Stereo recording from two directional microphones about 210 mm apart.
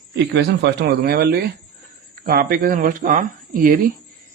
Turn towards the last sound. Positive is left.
turn(degrees=-40)  # may be behind; listen again after turning